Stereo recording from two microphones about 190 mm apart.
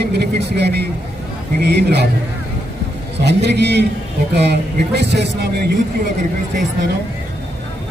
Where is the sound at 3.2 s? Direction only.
65° right (ahead or behind).